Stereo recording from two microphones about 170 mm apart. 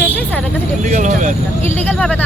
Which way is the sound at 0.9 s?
50° right (ahead or behind).